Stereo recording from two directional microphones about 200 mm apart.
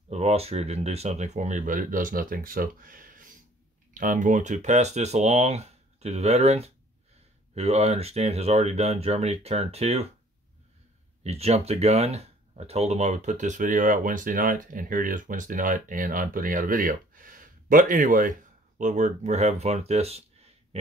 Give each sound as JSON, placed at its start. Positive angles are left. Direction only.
{"t": 0.1, "sound": "speech", "side_deg": -30}
{"t": 11.2, "sound": "speech", "side_deg": -30}